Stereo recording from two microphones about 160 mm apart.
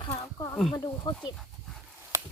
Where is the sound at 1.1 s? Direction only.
25° left (ahead or behind).